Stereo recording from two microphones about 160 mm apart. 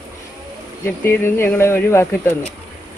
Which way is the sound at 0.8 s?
15° left (ahead or behind).